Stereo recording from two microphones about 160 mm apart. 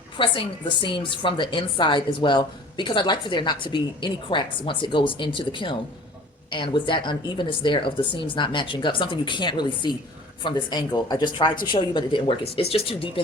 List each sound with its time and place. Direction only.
0.2 s a woman's voice: 30° left (ahead or behind)